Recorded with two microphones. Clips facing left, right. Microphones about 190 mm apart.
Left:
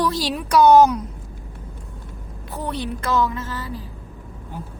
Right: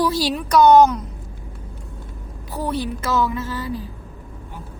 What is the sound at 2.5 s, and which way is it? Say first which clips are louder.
A woman's voice: right 3 dB; 5° right (ahead or behind).